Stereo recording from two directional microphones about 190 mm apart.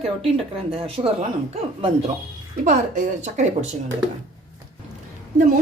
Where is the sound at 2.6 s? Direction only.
40° right (ahead or behind).